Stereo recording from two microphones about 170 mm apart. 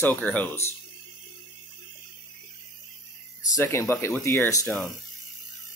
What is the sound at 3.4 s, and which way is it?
Speech, 20° left (ahead or behind).